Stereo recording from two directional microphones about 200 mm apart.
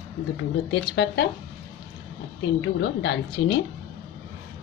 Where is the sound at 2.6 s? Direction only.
65° left (ahead or behind).